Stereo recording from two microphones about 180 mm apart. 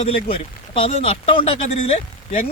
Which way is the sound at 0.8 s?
35° left (ahead or behind).